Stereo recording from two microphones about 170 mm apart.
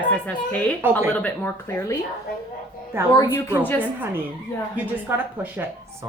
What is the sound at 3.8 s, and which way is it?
Speech, 10° right (ahead or behind).